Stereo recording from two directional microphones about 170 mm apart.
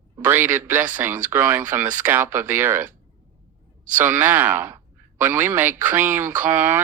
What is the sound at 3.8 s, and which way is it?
Speech, 50° right (ahead or behind).